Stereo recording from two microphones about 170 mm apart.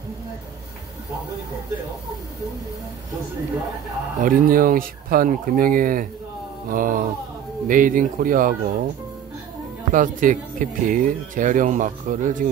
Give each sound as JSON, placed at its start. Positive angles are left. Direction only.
{"t": 4.2, "sound": "speech", "side_deg": -55}
{"t": 9.9, "sound": "speech", "side_deg": -50}